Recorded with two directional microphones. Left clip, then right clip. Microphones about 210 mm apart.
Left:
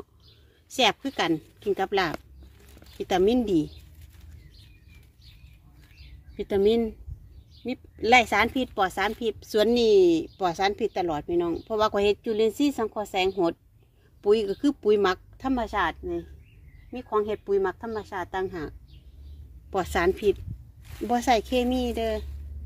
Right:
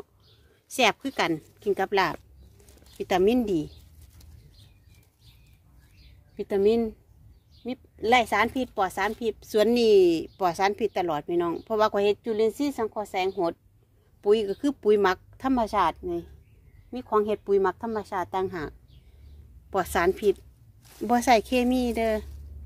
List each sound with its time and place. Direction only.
0.7 s a woman's voice: 5° right (ahead or behind)
6.3 s a woman's voice: centre (ahead or behind); by 18.8 s 15° right (ahead or behind)
19.7 s a woman's voice: 5° right (ahead or behind)
21.1 s speech: 20° right (ahead or behind)